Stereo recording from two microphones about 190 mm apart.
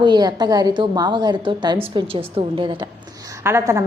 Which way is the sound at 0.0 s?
20° right (ahead or behind).